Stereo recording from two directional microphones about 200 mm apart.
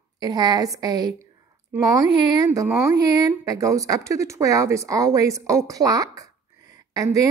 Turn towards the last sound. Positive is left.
turn(degrees=-15)  # may be behind; listen again after turning